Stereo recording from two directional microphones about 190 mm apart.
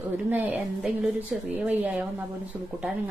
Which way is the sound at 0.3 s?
10° right (ahead or behind).